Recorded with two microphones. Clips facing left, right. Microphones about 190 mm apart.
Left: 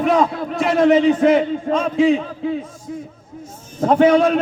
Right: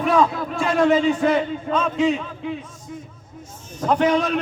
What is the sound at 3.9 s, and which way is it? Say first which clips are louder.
Speech: left 6 dB; 35° left (ahead or behind).